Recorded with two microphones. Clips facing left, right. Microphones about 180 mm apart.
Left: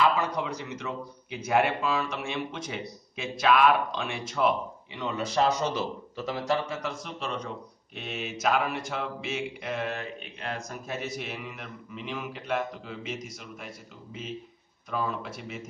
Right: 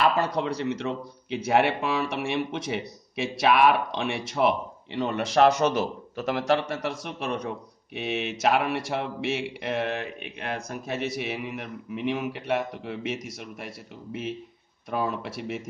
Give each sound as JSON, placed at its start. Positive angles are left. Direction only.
{"t": 0.0, "sound": "a man's voice", "side_deg": -70}